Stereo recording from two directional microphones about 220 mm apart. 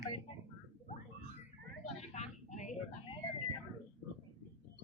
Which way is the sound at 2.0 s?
30° left (ahead or behind).